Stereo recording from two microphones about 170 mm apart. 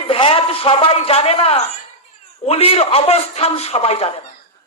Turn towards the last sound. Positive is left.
turn(degrees=35)  # may be behind; listen again after turning